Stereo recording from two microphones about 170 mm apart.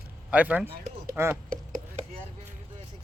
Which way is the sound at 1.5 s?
50° right (ahead or behind).